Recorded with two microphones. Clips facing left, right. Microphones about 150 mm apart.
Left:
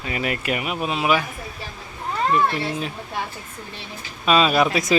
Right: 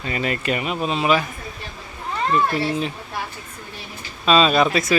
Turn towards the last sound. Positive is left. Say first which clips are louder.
# right 1 dB
turn(degrees=10)  # may be behind; listen again after turning